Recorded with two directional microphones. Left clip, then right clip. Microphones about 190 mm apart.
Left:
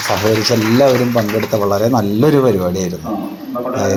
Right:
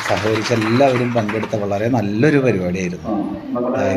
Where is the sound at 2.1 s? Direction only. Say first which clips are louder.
Left 2 dB; 10° left (ahead or behind).